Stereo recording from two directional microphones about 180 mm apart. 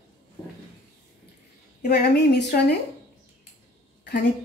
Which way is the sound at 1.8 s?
65° left (ahead or behind).